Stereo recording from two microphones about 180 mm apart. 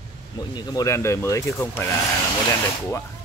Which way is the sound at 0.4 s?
20° left (ahead or behind).